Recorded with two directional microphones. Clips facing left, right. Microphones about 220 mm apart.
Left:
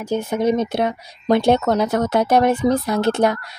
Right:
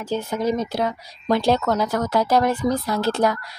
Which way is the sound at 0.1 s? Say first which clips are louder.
Left 4 dB; 25° left (ahead or behind).